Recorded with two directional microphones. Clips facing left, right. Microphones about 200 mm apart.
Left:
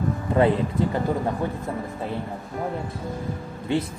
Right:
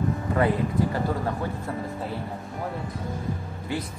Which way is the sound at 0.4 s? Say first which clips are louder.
Left 4 dB; 25° left (ahead or behind).